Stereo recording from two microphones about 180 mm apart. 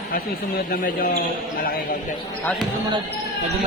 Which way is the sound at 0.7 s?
50° left (ahead or behind).